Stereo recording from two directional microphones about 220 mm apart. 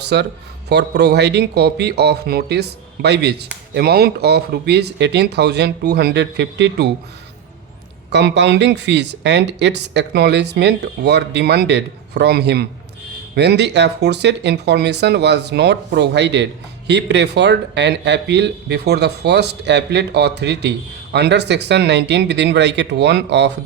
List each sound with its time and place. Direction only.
0.1 s speech: 50° right (ahead or behind)
8.1 s speech: 50° right (ahead or behind)